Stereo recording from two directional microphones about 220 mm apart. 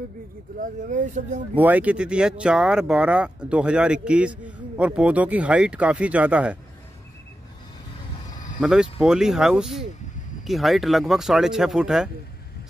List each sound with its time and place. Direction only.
0.6 s speech: 35° right (ahead or behind)
1.5 s speech: 5° right (ahead or behind)
8.5 s speech: centre (ahead or behind)